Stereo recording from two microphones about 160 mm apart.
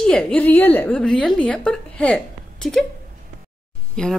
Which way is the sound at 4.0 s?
5° left (ahead or behind).